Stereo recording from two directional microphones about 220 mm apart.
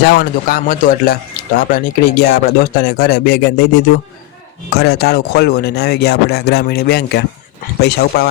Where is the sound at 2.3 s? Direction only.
45° left (ahead or behind).